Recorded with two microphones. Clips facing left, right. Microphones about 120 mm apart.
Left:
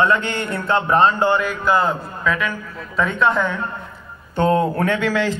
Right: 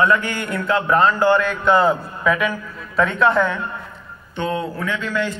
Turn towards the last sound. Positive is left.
turn(degrees=90)